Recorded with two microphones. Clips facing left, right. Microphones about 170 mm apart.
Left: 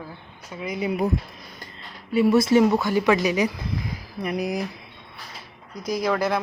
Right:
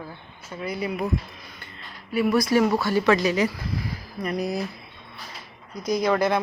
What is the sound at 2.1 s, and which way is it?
A woman's voice, 25° left (ahead or behind).